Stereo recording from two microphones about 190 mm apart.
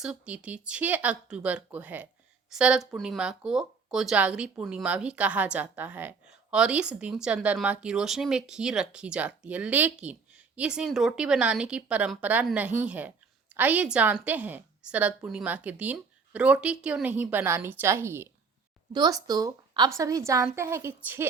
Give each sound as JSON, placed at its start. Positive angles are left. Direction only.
{"t": 0.0, "sound": "speech", "side_deg": -5}